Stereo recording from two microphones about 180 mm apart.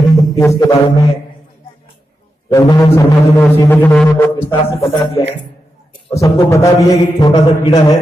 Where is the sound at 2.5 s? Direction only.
15° left (ahead or behind).